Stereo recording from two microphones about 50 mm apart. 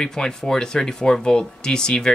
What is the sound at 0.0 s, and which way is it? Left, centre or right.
Speech, centre.